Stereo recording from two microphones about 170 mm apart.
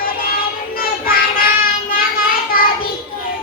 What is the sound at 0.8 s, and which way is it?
Child singing, 60° left (ahead or behind).